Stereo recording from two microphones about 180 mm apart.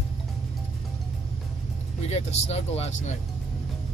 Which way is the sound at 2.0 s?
35° left (ahead or behind).